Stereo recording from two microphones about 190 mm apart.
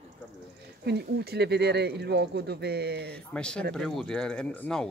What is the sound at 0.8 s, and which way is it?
Speech, 60° right (ahead or behind).